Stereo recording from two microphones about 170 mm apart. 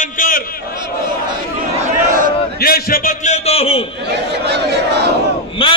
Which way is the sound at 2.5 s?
65° left (ahead or behind).